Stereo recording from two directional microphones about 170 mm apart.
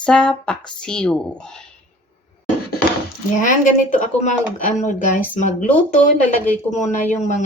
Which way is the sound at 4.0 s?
45° left (ahead or behind).